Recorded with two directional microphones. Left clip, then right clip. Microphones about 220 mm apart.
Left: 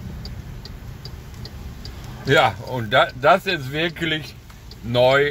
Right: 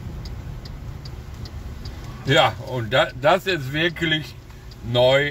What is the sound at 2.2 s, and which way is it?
Speech, 15° left (ahead or behind).